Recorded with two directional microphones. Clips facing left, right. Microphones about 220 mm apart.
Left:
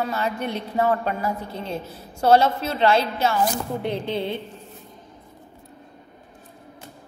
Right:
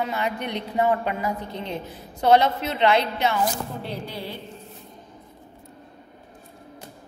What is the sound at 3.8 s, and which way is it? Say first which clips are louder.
Music: left 7 dB; 20° left (ahead or behind).